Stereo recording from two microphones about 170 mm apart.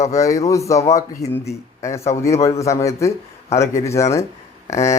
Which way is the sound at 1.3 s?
15° left (ahead or behind).